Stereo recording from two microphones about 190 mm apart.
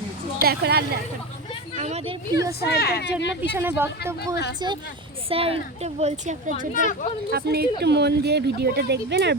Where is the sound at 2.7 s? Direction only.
55° left (ahead or behind).